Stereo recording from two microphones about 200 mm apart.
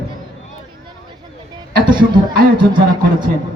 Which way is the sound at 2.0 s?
45° right (ahead or behind).